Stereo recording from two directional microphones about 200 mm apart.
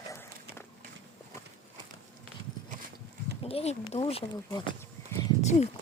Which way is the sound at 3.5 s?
30° left (ahead or behind).